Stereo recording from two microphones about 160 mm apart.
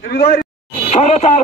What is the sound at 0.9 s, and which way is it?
Speech, 40° left (ahead or behind).